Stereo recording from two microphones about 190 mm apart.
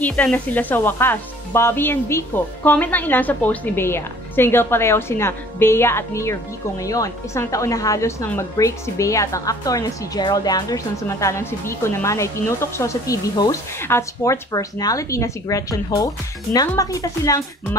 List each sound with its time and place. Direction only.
0.0 s a woman's voice: 5° left (ahead or behind)